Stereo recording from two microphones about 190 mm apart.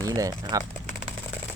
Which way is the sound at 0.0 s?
20° right (ahead or behind).